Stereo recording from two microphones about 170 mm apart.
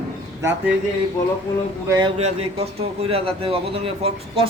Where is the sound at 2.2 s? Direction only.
40° right (ahead or behind).